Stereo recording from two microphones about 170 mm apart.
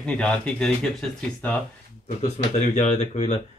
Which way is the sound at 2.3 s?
45° left (ahead or behind).